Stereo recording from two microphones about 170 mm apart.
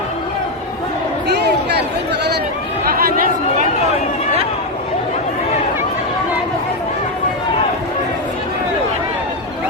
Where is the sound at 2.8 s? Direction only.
60° right (ahead or behind).